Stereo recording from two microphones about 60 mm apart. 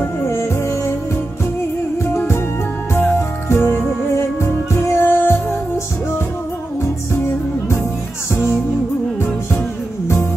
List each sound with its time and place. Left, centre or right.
0.0 s music: left
2.9 s music: left